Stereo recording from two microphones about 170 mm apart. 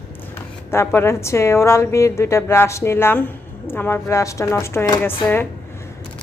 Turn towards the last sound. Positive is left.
turn(degrees=10)  # may be behind; listen again after turning